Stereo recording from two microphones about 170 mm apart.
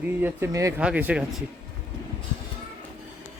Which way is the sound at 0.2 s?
10° right (ahead or behind).